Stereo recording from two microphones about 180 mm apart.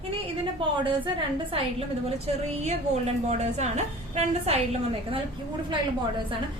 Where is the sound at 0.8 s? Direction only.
25° right (ahead or behind).